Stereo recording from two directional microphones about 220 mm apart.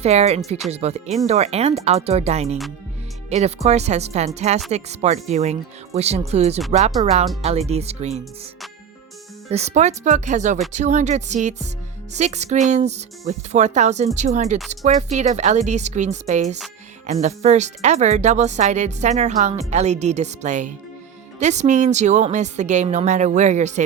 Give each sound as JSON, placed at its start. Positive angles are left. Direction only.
{"t": 0.0, "sound": "speech", "side_deg": -30}
{"t": 9.5, "sound": "speech", "side_deg": -30}